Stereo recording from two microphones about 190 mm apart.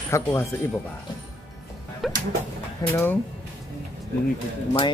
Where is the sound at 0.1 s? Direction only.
15° left (ahead or behind).